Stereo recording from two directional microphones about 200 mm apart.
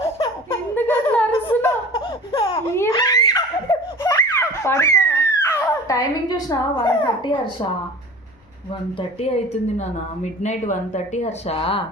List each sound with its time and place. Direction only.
0.8 s a sound: 10° left (ahead or behind)
2.0 s laughter: 25° left (ahead or behind)
2.6 s laughter: 15° left (ahead or behind)
10.4 s speech: 35° left (ahead or behind)